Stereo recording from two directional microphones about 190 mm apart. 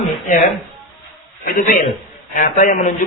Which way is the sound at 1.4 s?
45° left (ahead or behind).